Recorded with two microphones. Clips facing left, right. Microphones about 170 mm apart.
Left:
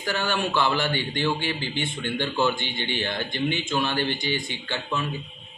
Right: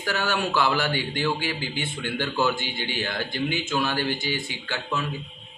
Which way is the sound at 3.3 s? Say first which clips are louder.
Even; 5° right (ahead or behind).